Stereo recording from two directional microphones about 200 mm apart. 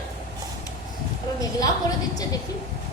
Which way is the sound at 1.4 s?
15° left (ahead or behind).